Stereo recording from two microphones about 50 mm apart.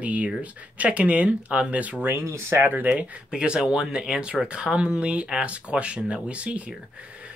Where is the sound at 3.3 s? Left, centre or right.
Centre.